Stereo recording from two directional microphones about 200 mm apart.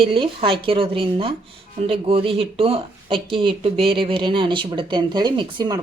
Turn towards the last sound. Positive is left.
turn(degrees=-20)  # may be behind; listen again after turning